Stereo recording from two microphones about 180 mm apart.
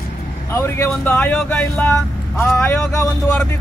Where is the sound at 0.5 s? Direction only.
15° left (ahead or behind).